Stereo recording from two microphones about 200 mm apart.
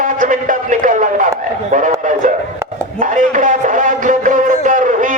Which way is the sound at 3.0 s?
40° right (ahead or behind).